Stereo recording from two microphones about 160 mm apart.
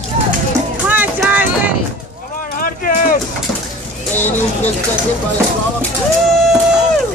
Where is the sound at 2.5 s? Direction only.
65° left (ahead or behind).